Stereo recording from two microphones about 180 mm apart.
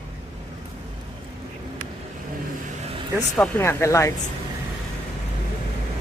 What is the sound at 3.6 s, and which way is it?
Speech, 15° left (ahead or behind).